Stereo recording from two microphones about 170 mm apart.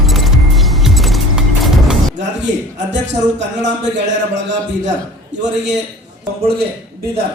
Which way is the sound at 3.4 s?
90° right.